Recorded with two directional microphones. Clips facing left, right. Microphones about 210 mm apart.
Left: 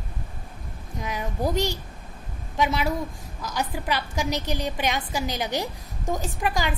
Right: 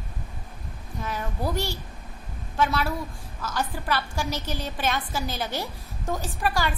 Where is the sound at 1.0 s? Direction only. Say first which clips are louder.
Left 2 dB; 15° left (ahead or behind).